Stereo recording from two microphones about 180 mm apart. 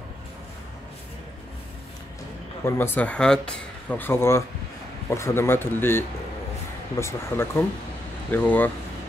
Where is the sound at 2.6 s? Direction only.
10° left (ahead or behind).